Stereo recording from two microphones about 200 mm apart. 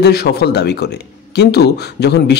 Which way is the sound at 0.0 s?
55° left (ahead or behind).